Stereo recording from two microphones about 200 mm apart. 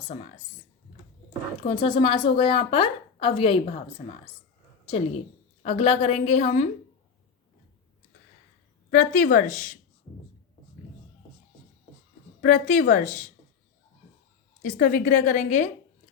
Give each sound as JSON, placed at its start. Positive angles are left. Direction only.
{"t": 1.6, "sound": "a woman's voice", "side_deg": 25}
{"t": 5.6, "sound": "a woman's voice", "side_deg": 30}
{"t": 8.9, "sound": "a woman's voice", "side_deg": 45}
{"t": 12.4, "sound": "a woman's voice", "side_deg": 40}
{"t": 14.6, "sound": "a woman's voice", "side_deg": 45}